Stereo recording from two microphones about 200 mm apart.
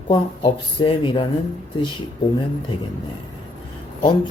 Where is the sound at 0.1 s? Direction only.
25° left (ahead or behind).